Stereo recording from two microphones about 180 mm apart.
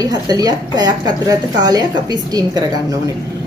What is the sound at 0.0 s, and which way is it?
A woman's voice, 20° right (ahead or behind).